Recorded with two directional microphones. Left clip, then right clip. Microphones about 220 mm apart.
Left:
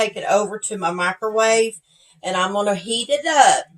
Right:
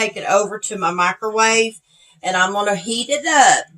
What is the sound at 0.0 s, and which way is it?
Speech, 25° right (ahead or behind).